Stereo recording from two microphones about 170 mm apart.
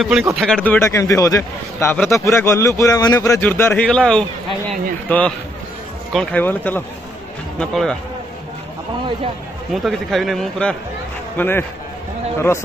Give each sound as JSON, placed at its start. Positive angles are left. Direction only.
{"t": 0.0, "sound": "speech", "side_deg": -5}
{"t": 0.7, "sound": "speech", "side_deg": 15}
{"t": 9.8, "sound": "speech", "side_deg": 0}